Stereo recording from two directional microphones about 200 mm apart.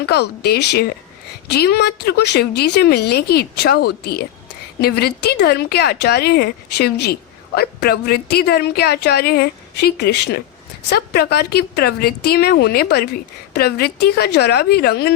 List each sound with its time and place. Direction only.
0.0 s speech: 55° left (ahead or behind)